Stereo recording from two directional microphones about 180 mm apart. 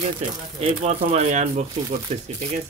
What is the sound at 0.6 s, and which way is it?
Speech, 35° right (ahead or behind).